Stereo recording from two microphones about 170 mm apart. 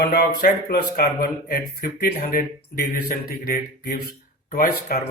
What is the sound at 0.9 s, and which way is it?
Speech, 65° left (ahead or behind).